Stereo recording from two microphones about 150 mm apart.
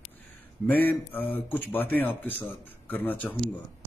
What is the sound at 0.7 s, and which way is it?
A man's voice, 10° left (ahead or behind).